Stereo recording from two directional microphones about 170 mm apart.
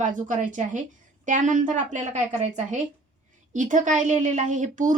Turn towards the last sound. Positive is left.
turn(degrees=-50)  # may be behind; listen again after turning